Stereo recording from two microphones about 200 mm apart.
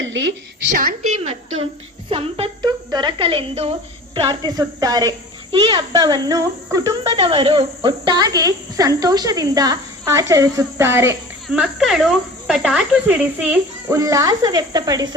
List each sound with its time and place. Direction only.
0.0 s a woman's voice: 70° right (ahead or behind)
2.0 s speech: 30° right (ahead or behind); by 13.6 s 5° right (ahead or behind)
13.9 s speech: 15° right (ahead or behind)